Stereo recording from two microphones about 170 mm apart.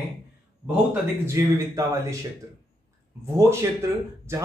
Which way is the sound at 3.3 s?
15° right (ahead or behind).